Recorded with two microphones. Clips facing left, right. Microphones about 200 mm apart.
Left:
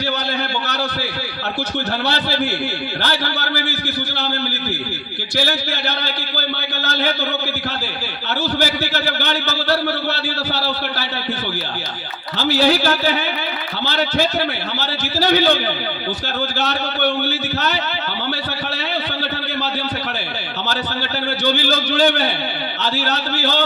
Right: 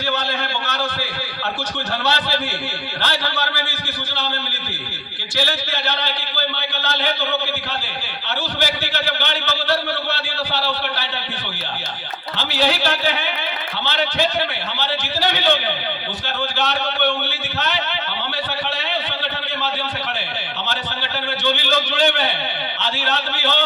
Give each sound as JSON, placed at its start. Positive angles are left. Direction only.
{"t": 3.0, "sound": "a man's voice", "side_deg": 40}
{"t": 5.4, "sound": "a man's voice", "side_deg": 40}
{"t": 8.5, "sound": "a man's voice", "side_deg": 40}
{"t": 12.4, "sound": "a man's voice", "side_deg": 40}
{"t": 20.7, "sound": "a sound", "side_deg": 40}
{"t": 22.8, "sound": "a man's voice", "side_deg": 40}